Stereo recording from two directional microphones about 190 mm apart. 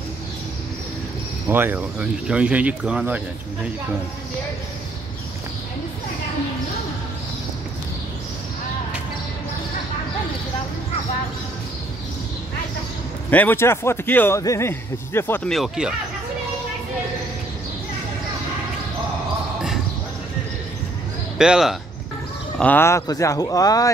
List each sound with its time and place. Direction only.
1.5 s speech: 10° right (ahead or behind)
13.3 s a man's voice: 10° left (ahead or behind)
21.4 s speech: 5° right (ahead or behind)
22.6 s a man's voice: 10° left (ahead or behind)